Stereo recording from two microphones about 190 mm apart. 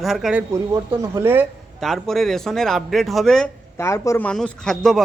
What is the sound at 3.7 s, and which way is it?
A man's voice, 15° left (ahead or behind).